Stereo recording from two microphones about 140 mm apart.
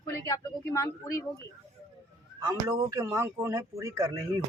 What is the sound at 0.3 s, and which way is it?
Speech, 20° left (ahead or behind).